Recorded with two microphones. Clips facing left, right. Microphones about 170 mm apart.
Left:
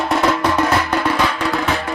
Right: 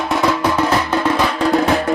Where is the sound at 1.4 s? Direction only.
40° right (ahead or behind).